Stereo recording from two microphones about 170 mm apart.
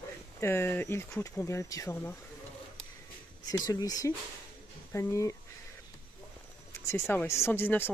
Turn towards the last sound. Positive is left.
turn(degrees=10)  # may be behind; listen again after turning